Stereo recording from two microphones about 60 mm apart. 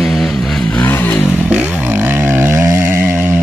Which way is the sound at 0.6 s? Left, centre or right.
Centre.